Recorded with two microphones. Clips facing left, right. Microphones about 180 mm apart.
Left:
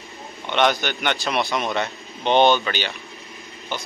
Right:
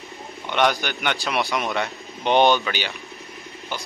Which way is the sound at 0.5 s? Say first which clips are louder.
Left 1 dB; 10° right (ahead or behind).